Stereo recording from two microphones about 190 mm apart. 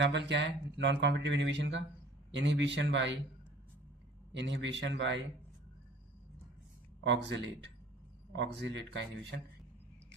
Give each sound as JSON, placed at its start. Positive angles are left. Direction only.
{"t": 0.0, "sound": "speech", "side_deg": -65}
{"t": 4.3, "sound": "speech", "side_deg": -70}
{"t": 7.0, "sound": "speech", "side_deg": -65}